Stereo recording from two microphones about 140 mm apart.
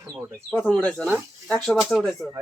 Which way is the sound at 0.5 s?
5° left (ahead or behind).